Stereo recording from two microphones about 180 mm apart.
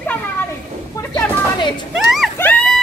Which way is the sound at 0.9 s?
20° left (ahead or behind).